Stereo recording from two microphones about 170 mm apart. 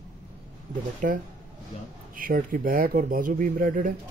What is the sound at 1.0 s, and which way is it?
Speech, 50° right (ahead or behind).